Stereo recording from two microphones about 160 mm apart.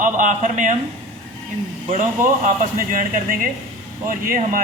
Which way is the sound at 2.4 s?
60° right (ahead or behind).